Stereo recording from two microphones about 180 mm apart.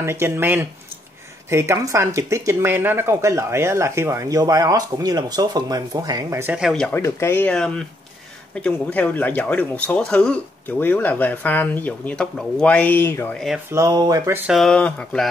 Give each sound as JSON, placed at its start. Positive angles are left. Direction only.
{"t": 0.0, "sound": "speech", "side_deg": -15}
{"t": 7.0, "sound": "speech", "side_deg": 15}
{"t": 13.7, "sound": "speech", "side_deg": -20}
{"t": 14.5, "sound": "speech", "side_deg": 5}